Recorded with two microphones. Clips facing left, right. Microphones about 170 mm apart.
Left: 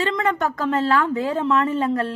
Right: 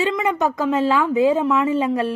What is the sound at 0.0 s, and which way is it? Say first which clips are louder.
A woman's voice: right 2 dB; 10° right (ahead or behind).